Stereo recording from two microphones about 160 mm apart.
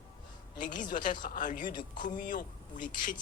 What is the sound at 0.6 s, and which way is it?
Speech, 55° left (ahead or behind).